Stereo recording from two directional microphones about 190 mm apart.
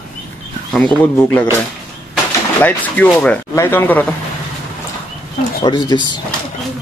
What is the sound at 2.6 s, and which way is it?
Speech, 10° left (ahead or behind).